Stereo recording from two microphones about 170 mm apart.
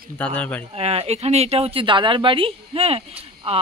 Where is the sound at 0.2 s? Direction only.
10° left (ahead or behind).